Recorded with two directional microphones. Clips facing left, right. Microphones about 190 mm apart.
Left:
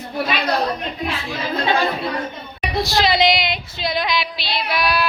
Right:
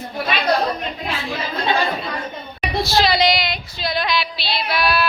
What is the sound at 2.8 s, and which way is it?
Female singing, 20° left (ahead or behind).